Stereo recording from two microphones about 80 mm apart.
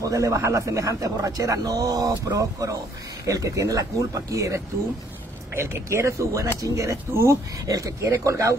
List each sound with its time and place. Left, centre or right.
0.0 s a man's voice: right